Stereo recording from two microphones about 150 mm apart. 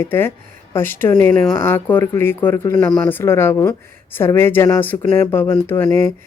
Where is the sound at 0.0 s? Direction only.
15° left (ahead or behind).